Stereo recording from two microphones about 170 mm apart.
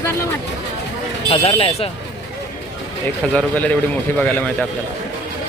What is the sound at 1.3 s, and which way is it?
Speech, 35° left (ahead or behind).